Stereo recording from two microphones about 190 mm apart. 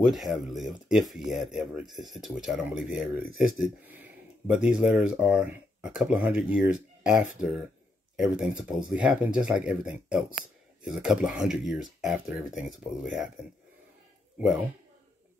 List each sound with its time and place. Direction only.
0.0 s speech: centre (ahead or behind)
3.3 s speech: 45° left (ahead or behind)
3.8 s speech: 10° right (ahead or behind)